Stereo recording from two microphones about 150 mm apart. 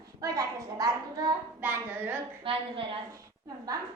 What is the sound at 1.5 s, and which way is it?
Speech, 15° right (ahead or behind).